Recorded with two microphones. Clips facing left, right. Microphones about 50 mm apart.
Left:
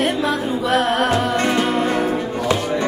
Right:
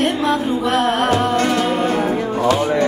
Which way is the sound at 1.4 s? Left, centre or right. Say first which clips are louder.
Right 1 dB; centre.